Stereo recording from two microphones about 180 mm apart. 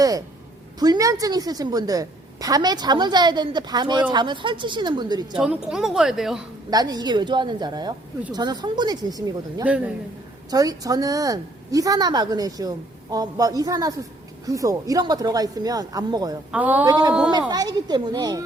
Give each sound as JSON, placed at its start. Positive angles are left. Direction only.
{"t": 0.8, "sound": "a woman's voice", "side_deg": -20}
{"t": 5.3, "sound": "a woman's voice", "side_deg": -5}
{"t": 6.7, "sound": "a woman's voice", "side_deg": -20}
{"t": 9.6, "sound": "a woman's voice", "side_deg": -10}
{"t": 10.5, "sound": "a woman's voice", "side_deg": -20}
{"t": 16.5, "sound": "a woman's voice", "side_deg": -10}
{"t": 16.8, "sound": "a woman's voice", "side_deg": -20}